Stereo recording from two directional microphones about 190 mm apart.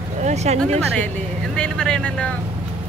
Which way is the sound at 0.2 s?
35° right (ahead or behind).